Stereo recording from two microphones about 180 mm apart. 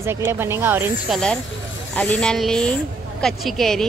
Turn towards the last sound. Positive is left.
turn(degrees=0)  # may be behind; listen again after turning